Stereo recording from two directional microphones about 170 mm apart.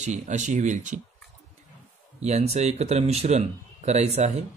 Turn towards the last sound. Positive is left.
turn(degrees=-40)  # may be behind; listen again after turning